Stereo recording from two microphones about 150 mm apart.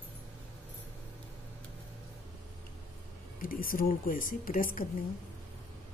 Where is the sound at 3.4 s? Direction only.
70° left (ahead or behind).